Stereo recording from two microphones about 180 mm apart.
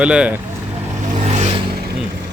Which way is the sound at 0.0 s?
5° right (ahead or behind).